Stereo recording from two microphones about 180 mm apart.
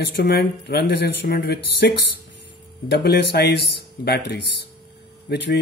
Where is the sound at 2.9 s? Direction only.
70° left (ahead or behind).